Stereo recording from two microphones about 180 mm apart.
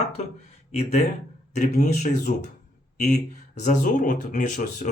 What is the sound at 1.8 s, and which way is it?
Speech, 40° left (ahead or behind).